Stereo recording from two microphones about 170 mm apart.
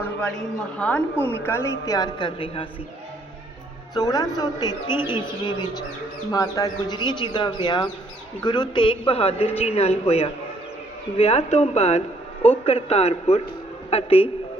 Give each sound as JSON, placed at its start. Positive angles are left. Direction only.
{"t": 0.0, "sound": "a sound", "side_deg": 5}
{"t": 0.8, "sound": "a woman's voice", "side_deg": 5}
{"t": 3.9, "sound": "a woman's voice", "side_deg": 20}